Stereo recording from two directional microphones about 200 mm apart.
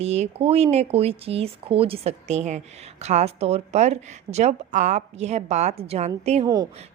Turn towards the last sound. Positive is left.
turn(degrees=-20)  # may be behind; listen again after turning